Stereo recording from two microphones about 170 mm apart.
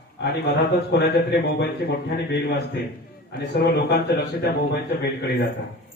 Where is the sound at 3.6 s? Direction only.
80° left.